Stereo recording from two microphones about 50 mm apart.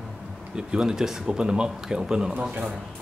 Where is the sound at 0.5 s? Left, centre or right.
Centre.